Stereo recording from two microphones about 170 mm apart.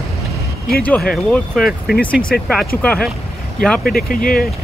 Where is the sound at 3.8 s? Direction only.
60° left (ahead or behind).